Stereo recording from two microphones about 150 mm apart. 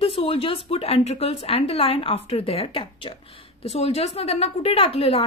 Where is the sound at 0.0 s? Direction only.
40° left (ahead or behind).